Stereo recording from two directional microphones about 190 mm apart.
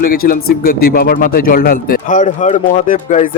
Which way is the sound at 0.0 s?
50° left (ahead or behind).